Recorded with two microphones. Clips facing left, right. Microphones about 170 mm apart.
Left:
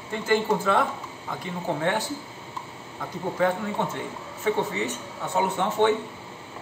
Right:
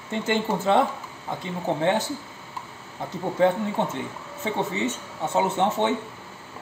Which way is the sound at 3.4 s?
25° right (ahead or behind).